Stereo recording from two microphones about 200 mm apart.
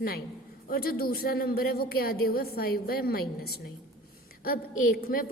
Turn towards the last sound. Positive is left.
turn(degrees=45)  # may be behind; listen again after turning